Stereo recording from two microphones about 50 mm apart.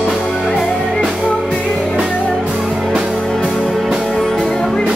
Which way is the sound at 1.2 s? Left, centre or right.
Centre.